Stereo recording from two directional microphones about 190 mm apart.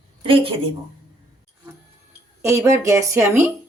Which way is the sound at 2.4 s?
15° right (ahead or behind).